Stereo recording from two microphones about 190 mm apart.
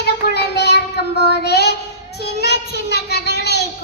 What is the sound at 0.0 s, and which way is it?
Child singing, 60° left (ahead or behind).